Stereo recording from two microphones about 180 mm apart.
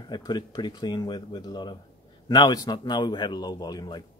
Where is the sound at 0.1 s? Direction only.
25° left (ahead or behind).